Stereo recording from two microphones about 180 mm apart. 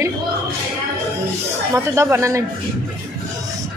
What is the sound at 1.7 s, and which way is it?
Speech, 15° right (ahead or behind).